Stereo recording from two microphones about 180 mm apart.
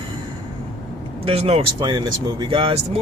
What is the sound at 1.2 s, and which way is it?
Speech, 30° right (ahead or behind).